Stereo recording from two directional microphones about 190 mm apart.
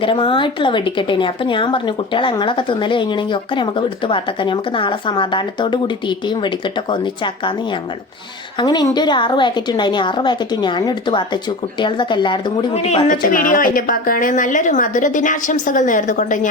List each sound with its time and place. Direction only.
0.0 s a woman's voice: 25° left (ahead or behind)
8.5 s a woman's voice: 20° left (ahead or behind); by 16.5 s 40° left (ahead or behind)